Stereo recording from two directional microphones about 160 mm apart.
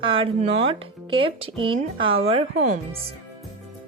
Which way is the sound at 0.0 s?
35° right (ahead or behind).